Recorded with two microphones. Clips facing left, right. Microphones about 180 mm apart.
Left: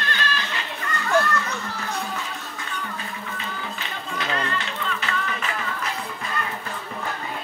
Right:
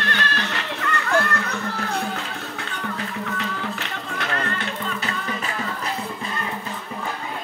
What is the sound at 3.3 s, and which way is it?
Music, 70° right (ahead or behind).